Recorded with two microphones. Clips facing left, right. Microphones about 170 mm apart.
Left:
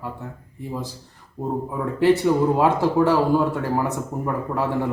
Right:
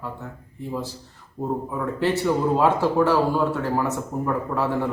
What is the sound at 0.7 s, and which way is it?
Speech, 15° left (ahead or behind).